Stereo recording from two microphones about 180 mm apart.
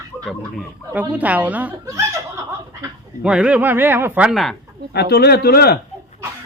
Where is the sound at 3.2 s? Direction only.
5° right (ahead or behind).